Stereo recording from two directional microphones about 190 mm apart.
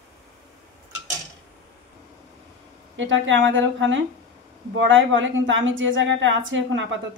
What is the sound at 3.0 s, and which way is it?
A woman's voice, 75° right (ahead or behind).